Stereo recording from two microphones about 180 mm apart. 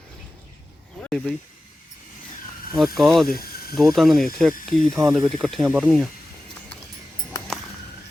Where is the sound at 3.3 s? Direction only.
55° left (ahead or behind).